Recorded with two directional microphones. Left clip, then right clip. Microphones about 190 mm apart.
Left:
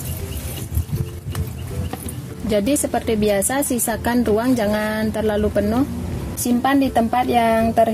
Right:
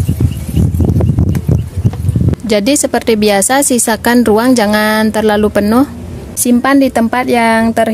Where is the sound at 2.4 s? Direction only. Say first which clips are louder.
Right 7 dB; 35° right (ahead or behind).